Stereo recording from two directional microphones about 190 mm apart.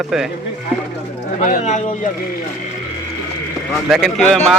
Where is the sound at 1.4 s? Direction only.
40° left (ahead or behind).